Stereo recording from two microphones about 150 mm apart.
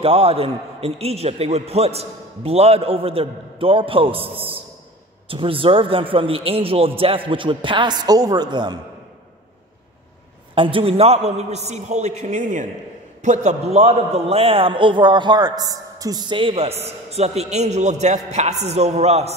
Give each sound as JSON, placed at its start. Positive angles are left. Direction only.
{"t": 0.0, "sound": "a man's voice", "side_deg": -40}
{"t": 10.5, "sound": "a man's voice", "side_deg": -35}